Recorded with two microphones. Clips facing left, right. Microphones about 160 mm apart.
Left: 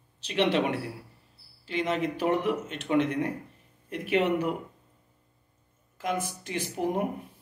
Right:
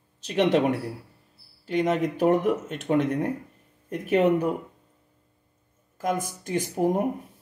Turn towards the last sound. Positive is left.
turn(degrees=-45)  # may be behind; listen again after turning